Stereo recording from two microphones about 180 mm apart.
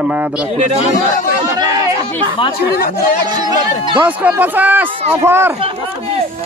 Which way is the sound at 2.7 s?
55° left (ahead or behind).